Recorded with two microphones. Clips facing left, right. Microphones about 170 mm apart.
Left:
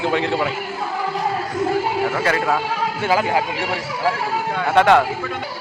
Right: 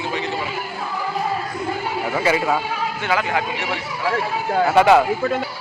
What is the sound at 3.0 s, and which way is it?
Speech, 30° left (ahead or behind).